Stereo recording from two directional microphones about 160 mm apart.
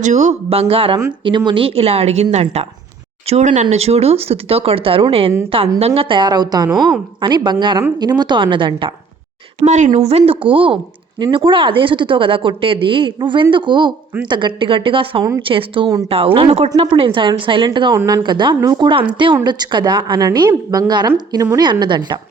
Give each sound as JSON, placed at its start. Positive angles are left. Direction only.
{"t": 0.0, "sound": "a woman's voice", "side_deg": -45}
{"t": 9.6, "sound": "a woman's voice", "side_deg": -45}
{"t": 16.9, "sound": "a woman's voice", "side_deg": -30}